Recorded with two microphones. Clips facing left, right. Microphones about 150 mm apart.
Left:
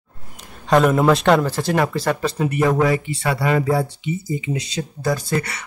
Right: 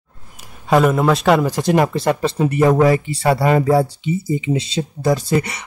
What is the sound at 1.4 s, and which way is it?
Speech, 15° right (ahead or behind).